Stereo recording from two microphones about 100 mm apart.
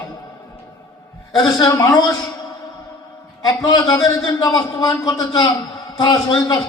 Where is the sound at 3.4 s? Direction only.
40° left (ahead or behind).